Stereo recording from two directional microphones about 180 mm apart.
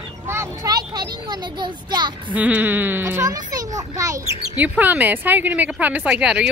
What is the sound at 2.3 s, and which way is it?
A child's voice, 10° right (ahead or behind).